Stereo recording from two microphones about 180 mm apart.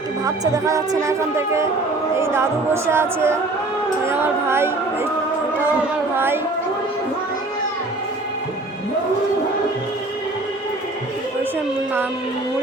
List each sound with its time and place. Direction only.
0.3 s speech: 20° right (ahead or behind)
6.1 s speech: 10° right (ahead or behind)